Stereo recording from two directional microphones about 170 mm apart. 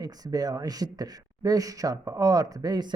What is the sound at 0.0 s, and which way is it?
Speech, 20° right (ahead or behind).